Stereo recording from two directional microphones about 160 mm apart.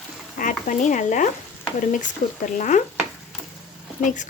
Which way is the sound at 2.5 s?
50° left (ahead or behind).